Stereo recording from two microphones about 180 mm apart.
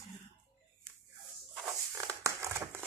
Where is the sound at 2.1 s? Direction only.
15° right (ahead or behind).